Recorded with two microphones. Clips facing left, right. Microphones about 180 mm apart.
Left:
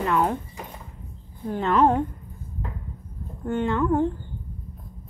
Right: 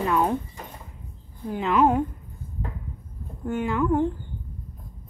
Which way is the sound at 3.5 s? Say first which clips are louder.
Left 1 dB; 5° right (ahead or behind).